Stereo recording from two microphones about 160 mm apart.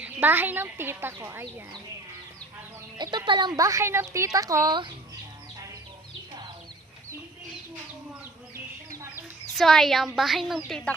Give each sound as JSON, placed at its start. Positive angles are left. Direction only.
{"t": 0.0, "sound": "a woman's voice", "side_deg": -10}
{"t": 3.0, "sound": "a woman's voice", "side_deg": -25}
{"t": 9.6, "sound": "a woman's voice", "side_deg": 0}